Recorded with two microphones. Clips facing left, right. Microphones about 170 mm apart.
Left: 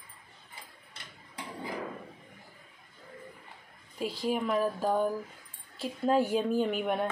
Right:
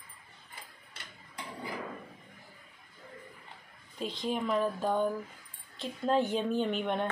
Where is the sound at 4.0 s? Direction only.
10° left (ahead or behind).